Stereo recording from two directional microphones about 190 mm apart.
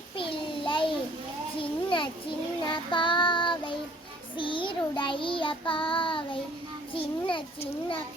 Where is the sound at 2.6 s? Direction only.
25° left (ahead or behind).